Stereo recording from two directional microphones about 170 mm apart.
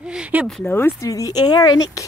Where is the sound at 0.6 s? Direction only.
15° left (ahead or behind).